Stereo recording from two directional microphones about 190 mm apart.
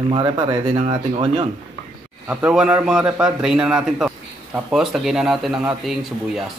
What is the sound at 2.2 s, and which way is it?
A man's voice, 5° right (ahead or behind).